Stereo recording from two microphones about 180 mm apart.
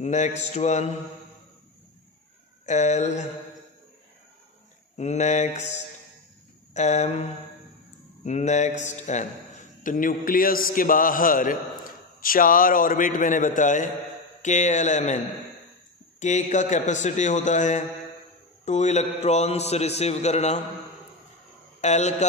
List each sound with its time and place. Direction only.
0.0 s a man's voice: 40° left (ahead or behind)
2.6 s a man's voice: 40° left (ahead or behind)
4.9 s a man's voice: 40° left (ahead or behind)
16.2 s a man's voice: 40° left (ahead or behind)
21.8 s a man's voice: 40° left (ahead or behind)